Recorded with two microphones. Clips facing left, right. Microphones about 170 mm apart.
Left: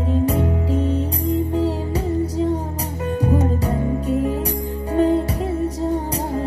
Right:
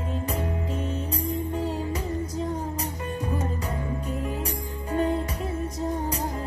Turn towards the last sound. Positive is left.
turn(degrees=35)  # may be behind; listen again after turning